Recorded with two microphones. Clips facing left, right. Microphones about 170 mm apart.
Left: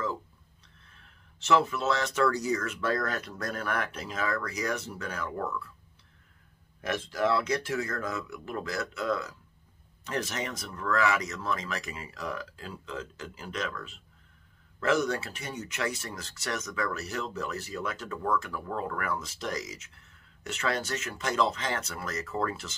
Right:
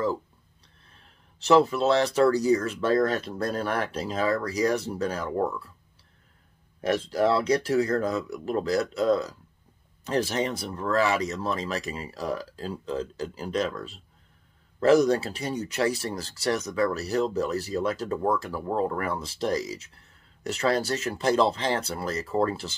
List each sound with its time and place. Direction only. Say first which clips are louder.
0.8 s speech: right 4 dB; 35° right (ahead or behind)
6.8 s speech: right 5 dB; 35° right (ahead or behind)